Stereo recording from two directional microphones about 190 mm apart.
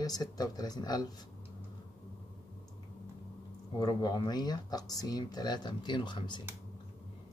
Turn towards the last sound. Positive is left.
turn(degrees=25)  # may be behind; listen again after turning